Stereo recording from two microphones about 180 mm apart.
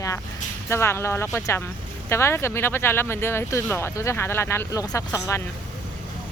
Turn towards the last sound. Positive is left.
turn(degrees=15)  # may be behind; listen again after turning